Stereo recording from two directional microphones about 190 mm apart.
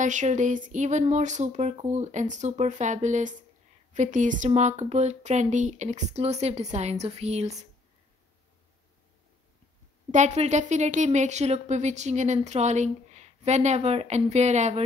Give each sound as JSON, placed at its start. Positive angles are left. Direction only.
{"t": 0.0, "sound": "a woman's voice", "side_deg": -40}
{"t": 10.1, "sound": "a woman's voice", "side_deg": -35}